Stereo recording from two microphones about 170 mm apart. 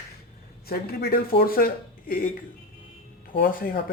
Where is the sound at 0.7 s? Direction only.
65° left (ahead or behind).